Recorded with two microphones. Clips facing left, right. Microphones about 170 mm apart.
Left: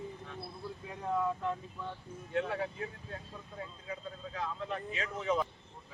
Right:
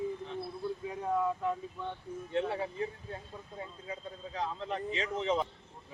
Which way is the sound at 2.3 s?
25° right (ahead or behind).